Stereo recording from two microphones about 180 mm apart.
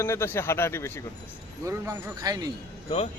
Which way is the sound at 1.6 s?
15° right (ahead or behind).